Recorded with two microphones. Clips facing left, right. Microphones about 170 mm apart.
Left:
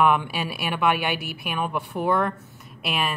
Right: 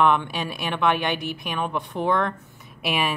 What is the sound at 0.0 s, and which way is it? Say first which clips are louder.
A woman's voice: even; 5° left (ahead or behind).